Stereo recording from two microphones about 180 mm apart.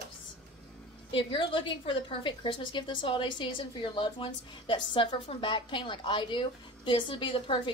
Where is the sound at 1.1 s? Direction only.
30° left (ahead or behind).